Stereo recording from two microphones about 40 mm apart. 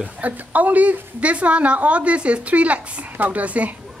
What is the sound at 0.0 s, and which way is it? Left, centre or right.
A woman's voice, right.